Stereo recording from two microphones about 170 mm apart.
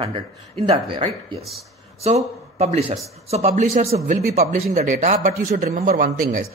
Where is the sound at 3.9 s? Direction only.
65° right (ahead or behind).